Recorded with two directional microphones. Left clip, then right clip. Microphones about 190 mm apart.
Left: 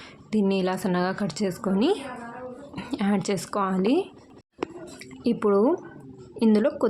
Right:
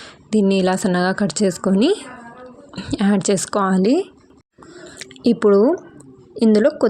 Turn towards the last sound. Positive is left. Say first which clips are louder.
# right 7 dB
turn(degrees=-25)  # may be behind; listen again after turning